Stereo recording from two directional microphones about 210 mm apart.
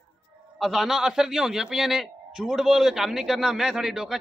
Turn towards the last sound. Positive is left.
turn(degrees=0)  # may be behind; listen again after turning